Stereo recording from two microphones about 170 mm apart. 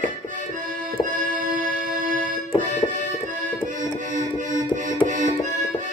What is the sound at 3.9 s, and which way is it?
Music, 50° right (ahead or behind).